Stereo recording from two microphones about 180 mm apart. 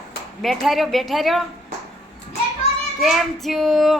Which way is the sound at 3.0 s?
Centre (ahead or behind).